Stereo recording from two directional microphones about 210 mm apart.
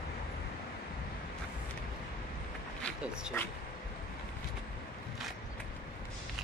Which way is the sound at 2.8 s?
5° right (ahead or behind).